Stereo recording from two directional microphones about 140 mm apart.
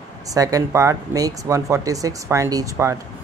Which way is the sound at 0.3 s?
25° right (ahead or behind).